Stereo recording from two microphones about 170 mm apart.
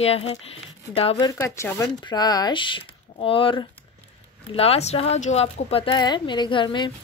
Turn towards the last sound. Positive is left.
turn(degrees=25)  # may be behind; listen again after turning